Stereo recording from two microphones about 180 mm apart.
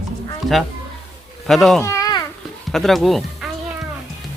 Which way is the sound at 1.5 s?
Centre (ahead or behind).